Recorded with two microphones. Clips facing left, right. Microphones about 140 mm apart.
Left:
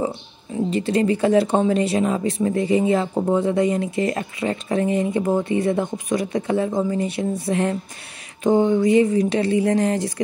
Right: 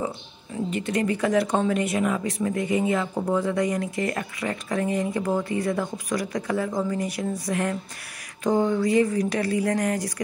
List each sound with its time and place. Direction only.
0.7 s speech: 30° left (ahead or behind)